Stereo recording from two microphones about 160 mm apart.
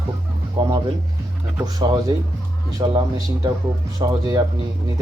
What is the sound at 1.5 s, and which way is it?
Speech, 25° right (ahead or behind).